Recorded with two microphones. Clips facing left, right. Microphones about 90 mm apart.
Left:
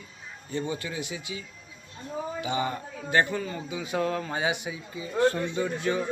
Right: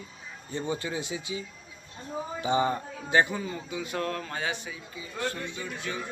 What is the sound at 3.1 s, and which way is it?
Speech, 15° right (ahead or behind).